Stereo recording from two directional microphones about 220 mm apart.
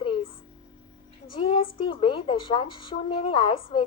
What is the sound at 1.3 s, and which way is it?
A woman's voice, 25° left (ahead or behind).